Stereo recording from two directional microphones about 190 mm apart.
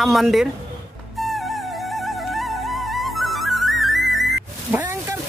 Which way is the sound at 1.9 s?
Centre (ahead or behind).